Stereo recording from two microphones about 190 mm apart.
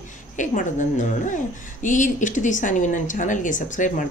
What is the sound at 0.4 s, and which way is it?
Speech, 40° left (ahead or behind).